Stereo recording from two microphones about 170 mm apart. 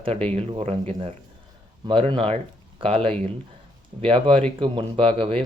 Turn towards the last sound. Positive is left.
turn(degrees=-30)  # may be behind; listen again after turning